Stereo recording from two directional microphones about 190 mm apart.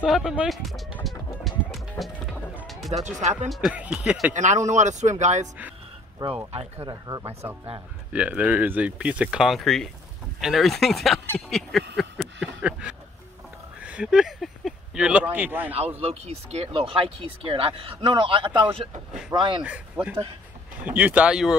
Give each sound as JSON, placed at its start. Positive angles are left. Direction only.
{"t": 0.0, "sound": "chicken", "side_deg": 0}
{"t": 2.5, "sound": "music", "side_deg": 0}
{"t": 2.9, "sound": "speech", "side_deg": -40}
{"t": 3.4, "sound": "speech", "side_deg": 0}
{"t": 4.3, "sound": "speech", "side_deg": -40}
{"t": 6.2, "sound": "speech", "side_deg": -20}
{"t": 12.0, "sound": "a sound", "side_deg": 0}
{"t": 13.8, "sound": "speech", "side_deg": -5}
{"t": 16.0, "sound": "speech", "side_deg": -30}
{"t": 19.1, "sound": "speech", "side_deg": -5}